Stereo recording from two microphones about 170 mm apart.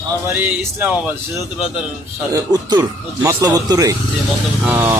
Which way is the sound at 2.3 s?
25° right (ahead or behind).